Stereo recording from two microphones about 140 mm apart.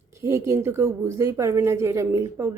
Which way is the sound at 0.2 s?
20° right (ahead or behind).